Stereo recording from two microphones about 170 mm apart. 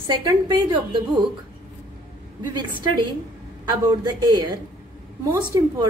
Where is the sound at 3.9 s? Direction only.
25° right (ahead or behind).